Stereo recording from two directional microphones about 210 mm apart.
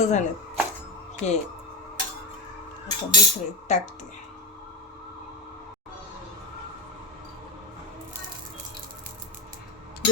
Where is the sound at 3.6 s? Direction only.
35° left (ahead or behind).